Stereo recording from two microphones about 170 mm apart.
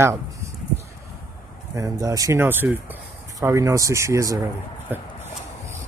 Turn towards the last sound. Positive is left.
turn(degrees=-10)  # may be behind; listen again after turning